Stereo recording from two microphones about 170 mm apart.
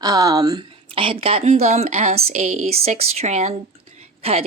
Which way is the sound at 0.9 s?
30° right (ahead or behind).